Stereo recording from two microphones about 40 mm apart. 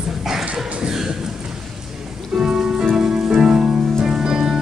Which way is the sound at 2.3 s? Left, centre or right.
Centre.